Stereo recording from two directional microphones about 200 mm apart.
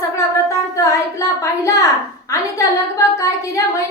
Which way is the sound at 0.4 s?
15° left (ahead or behind).